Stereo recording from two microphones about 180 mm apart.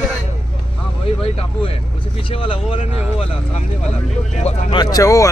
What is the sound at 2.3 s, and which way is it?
Speech, 30° left (ahead or behind).